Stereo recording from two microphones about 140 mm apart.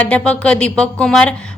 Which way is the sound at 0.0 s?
10° left (ahead or behind).